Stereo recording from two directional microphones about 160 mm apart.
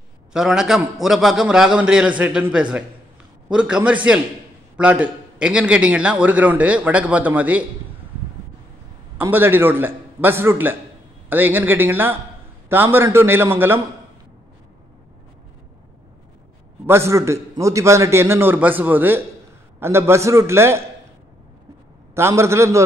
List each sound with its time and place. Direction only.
0.3 s a man's voice: 5° right (ahead or behind)
9.2 s a man's voice: 15° right (ahead or behind)
16.8 s a man's voice: 15° right (ahead or behind)
22.1 s a man's voice: 15° right (ahead or behind)